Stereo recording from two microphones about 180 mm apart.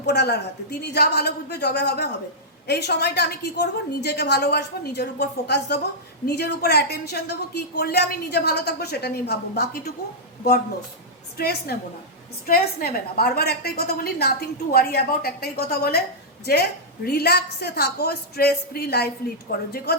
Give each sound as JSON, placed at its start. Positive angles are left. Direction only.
{"t": 0.0, "sound": "a woman's voice", "side_deg": 65}
{"t": 11.3, "sound": "a woman's voice", "side_deg": 60}